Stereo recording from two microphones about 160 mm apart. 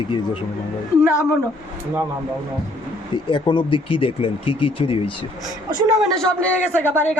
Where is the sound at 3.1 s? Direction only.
30° left (ahead or behind).